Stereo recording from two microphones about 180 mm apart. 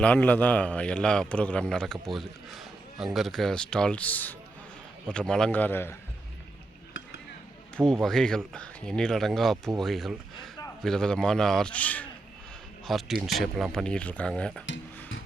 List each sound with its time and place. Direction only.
0.0 s a man's voice: 10° left (ahead or behind)
8.0 s a man's voice: 5° left (ahead or behind)